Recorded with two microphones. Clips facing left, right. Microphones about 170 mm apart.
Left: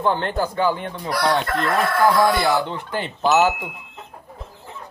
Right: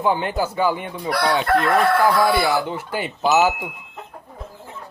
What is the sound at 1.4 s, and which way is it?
Chicken, 60° right (ahead or behind).